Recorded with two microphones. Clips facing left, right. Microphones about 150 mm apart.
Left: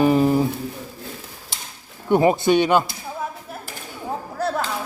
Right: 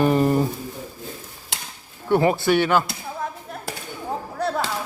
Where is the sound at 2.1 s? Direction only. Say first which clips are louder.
Left 2 dB; 20° left (ahead or behind).